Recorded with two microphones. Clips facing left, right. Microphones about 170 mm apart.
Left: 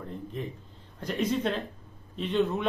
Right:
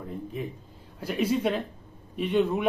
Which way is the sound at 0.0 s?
5° right (ahead or behind).